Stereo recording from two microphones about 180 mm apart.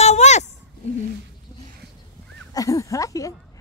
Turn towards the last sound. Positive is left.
turn(degrees=20)  # may be behind; listen again after turning